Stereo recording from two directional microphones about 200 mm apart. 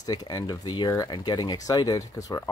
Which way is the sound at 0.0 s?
20° left (ahead or behind).